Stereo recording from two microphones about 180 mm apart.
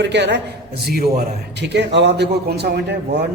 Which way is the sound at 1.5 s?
70° right (ahead or behind).